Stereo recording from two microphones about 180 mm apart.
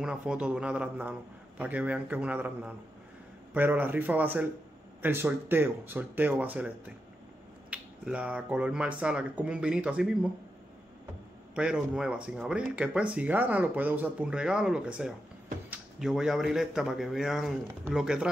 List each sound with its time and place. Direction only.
0.0 s speech: 5° right (ahead or behind)
7.7 s speech: 5° right (ahead or behind)
11.5 s speech: 5° right (ahead or behind)